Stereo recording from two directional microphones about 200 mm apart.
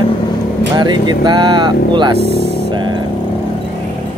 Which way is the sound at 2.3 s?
55° left (ahead or behind).